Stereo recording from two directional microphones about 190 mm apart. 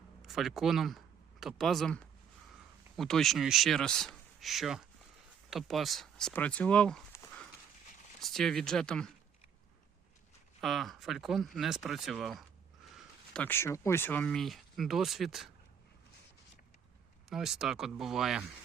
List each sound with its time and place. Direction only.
0.2 s speech: centre (ahead or behind)
10.6 s speech: centre (ahead or behind)
17.2 s speech: centre (ahead or behind)